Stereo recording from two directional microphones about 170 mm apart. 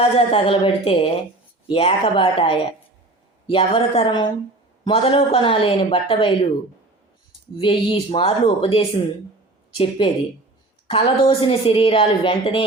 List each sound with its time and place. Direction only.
0.0 s a woman's voice: 35° left (ahead or behind)
7.6 s a woman's voice: 30° left (ahead or behind)